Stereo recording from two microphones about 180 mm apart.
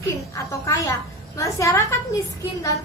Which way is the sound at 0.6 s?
15° left (ahead or behind).